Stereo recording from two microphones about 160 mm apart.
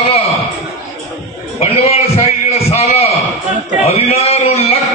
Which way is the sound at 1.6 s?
40° left (ahead or behind).